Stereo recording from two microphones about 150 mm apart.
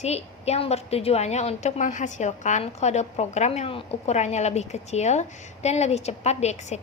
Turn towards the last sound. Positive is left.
turn(degrees=50)  # may be behind; listen again after turning